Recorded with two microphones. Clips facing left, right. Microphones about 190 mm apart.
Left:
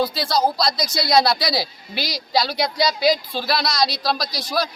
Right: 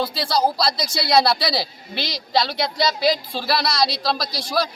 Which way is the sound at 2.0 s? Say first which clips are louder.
Left 1 dB; 25° right (ahead or behind).